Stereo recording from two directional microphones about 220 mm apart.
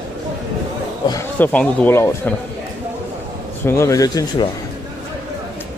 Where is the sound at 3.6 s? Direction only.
10° left (ahead or behind).